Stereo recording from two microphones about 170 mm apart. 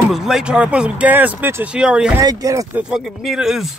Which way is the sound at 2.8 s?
5° right (ahead or behind).